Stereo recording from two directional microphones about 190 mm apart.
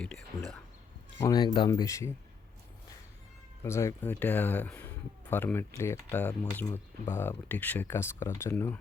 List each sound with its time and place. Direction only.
0.0 s speech: 5° left (ahead or behind)
1.2 s speech: 20° left (ahead or behind)
3.6 s speech: 15° left (ahead or behind)